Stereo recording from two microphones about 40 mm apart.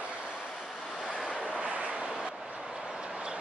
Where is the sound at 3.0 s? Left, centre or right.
Right.